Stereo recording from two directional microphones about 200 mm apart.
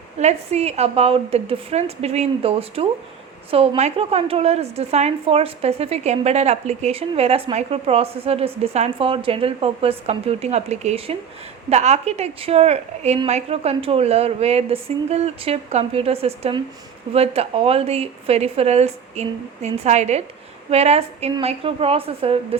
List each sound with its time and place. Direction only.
0.2 s a woman's voice: 35° right (ahead or behind)